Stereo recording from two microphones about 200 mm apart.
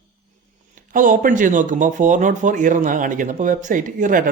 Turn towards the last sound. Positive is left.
turn(degrees=-40)  # may be behind; listen again after turning